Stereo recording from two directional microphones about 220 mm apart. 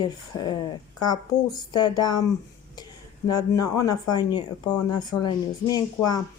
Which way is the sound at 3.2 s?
15° left (ahead or behind).